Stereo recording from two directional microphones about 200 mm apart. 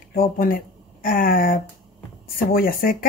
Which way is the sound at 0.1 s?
45° left (ahead or behind).